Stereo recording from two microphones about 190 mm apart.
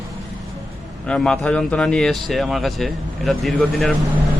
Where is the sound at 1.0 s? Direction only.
5° left (ahead or behind).